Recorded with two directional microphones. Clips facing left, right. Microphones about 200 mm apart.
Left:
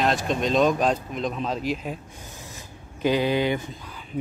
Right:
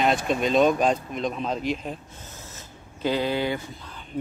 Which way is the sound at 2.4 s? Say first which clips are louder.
Left 2 dB; 15° left (ahead or behind).